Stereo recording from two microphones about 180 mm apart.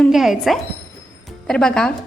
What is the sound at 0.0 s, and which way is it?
A woman's voice, centre (ahead or behind).